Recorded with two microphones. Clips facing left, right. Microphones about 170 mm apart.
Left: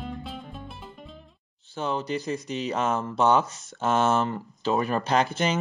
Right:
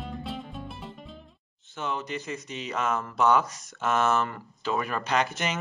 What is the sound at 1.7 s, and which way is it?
Speech, 35° left (ahead or behind).